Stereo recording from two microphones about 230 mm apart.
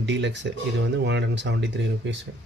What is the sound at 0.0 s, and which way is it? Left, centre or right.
Speech, right.